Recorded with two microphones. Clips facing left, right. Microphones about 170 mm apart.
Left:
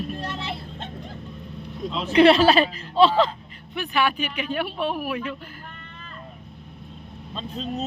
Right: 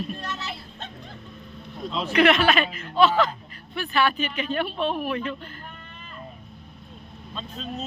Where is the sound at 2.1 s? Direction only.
30° left (ahead or behind).